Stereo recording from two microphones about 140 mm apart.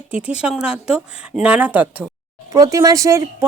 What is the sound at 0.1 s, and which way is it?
A woman's voice, 10° right (ahead or behind).